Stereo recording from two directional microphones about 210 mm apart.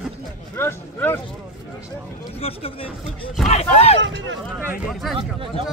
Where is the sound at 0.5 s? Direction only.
10° left (ahead or behind).